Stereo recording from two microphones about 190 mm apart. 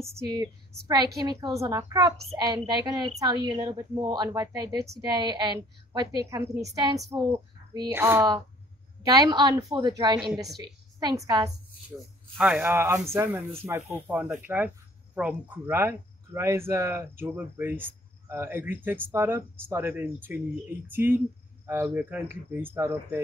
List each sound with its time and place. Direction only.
0.2 s a woman's voice: 20° right (ahead or behind)
7.9 s a woman's voice: 10° right (ahead or behind)
10.3 s a woman's voice: centre (ahead or behind)
10.6 s a woman's voice: 20° right (ahead or behind)